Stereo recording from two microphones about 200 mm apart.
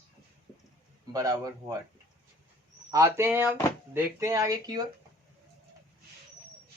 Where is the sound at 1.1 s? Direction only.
15° right (ahead or behind).